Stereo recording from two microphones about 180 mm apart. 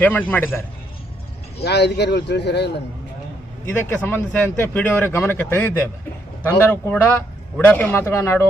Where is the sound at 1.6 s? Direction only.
70° left (ahead or behind).